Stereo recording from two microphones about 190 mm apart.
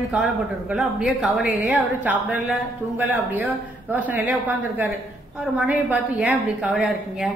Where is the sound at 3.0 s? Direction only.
10° right (ahead or behind).